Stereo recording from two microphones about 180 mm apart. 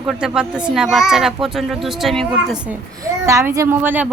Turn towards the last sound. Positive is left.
turn(degrees=-10)  # may be behind; listen again after turning